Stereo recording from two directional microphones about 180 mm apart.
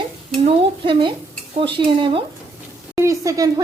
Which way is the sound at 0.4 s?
30° right (ahead or behind).